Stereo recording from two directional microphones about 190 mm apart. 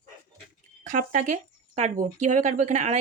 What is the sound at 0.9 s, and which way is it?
Speech, 45° right (ahead or behind).